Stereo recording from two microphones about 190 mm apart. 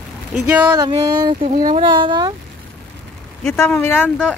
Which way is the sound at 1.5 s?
45° right (ahead or behind).